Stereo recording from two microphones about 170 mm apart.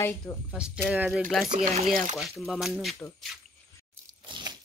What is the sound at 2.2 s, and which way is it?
Speech, centre (ahead or behind).